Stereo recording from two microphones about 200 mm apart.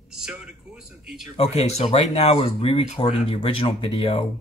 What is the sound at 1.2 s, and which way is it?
Speech, 30° left (ahead or behind).